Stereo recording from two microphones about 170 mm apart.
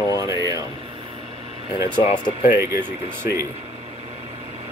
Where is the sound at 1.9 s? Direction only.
25° left (ahead or behind).